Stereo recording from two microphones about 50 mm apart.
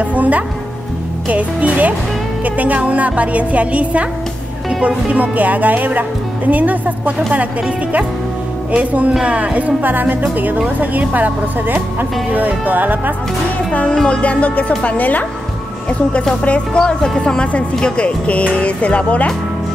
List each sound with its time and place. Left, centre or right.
0.0 s music: right
1.3 s a woman's voice: right
8.7 s a woman's voice: right
14.0 s a woman's voice: left
16.4 s speech: left